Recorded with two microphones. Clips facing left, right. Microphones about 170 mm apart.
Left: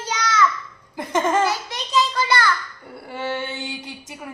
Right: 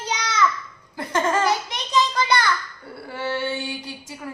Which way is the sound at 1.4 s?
20° right (ahead or behind).